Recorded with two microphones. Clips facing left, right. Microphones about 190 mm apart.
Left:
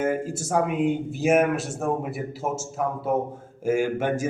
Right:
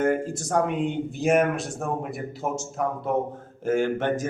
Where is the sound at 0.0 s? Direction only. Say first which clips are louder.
Right 2 dB; 5° left (ahead or behind).